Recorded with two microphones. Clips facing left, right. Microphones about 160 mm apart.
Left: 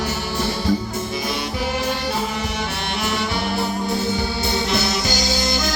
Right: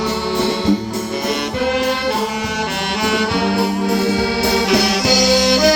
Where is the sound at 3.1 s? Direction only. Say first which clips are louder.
Right 7 dB; 75° right (ahead or behind).